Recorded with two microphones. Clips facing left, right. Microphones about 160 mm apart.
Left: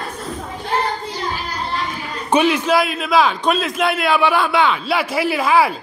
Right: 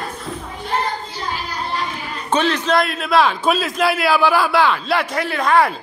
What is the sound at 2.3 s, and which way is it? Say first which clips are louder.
A man's voice: left 2 dB; 10° left (ahead or behind).